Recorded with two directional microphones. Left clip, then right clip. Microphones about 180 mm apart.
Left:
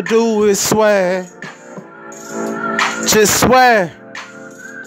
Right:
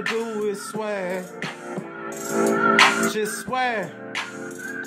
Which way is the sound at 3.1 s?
55° left (ahead or behind).